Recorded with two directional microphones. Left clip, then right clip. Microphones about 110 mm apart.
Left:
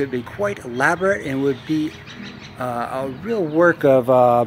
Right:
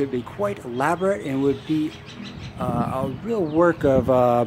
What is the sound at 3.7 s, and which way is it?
Speech, centre (ahead or behind).